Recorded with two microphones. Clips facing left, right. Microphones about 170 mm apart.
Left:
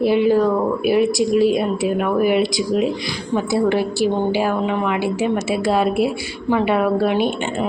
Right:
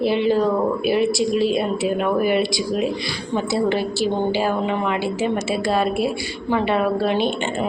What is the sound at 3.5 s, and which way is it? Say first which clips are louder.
Speech: left 3 dB; 5° left (ahead or behind).